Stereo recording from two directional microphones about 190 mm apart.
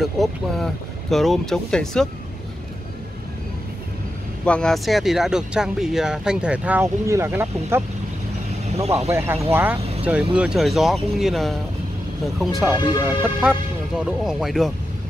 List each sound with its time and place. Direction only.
0.0 s vehicle: centre (ahead or behind)
1.1 s speech: centre (ahead or behind)
4.5 s speech: 5° left (ahead or behind); by 7.8 s 10° right (ahead or behind)
8.7 s speech: 35° right (ahead or behind)
9.1 s speech: 10° right (ahead or behind)
12.7 s speech: 20° left (ahead or behind)
13.2 s speech: 5° right (ahead or behind)